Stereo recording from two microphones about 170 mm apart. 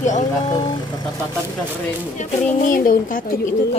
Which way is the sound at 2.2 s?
55° left (ahead or behind).